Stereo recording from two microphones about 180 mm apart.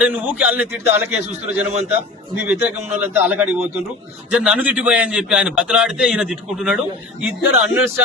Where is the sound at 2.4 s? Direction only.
10° right (ahead or behind).